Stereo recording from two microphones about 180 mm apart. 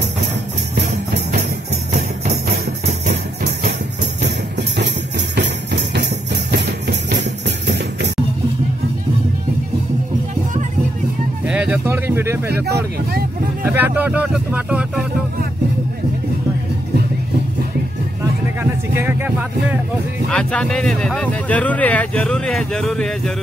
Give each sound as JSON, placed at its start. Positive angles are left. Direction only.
{"t": 5.3, "sound": "jingle bell", "side_deg": -70}
{"t": 7.4, "sound": "music", "side_deg": -70}
{"t": 11.4, "sound": "vehicle", "side_deg": -5}
{"t": 13.6, "sound": "speech", "side_deg": -10}
{"t": 18.6, "sound": "speech", "side_deg": -10}
{"t": 20.2, "sound": "speech", "side_deg": 5}